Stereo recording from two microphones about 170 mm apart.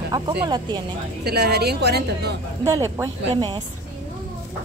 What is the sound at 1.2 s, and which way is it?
A woman's voice, 70° right (ahead or behind).